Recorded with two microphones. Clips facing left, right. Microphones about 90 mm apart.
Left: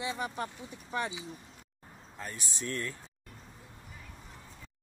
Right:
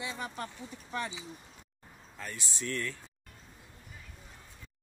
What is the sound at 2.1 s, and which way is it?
Speech, 25° left (ahead or behind).